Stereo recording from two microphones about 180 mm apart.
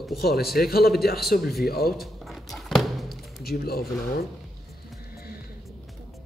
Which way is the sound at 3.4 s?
60° left (ahead or behind).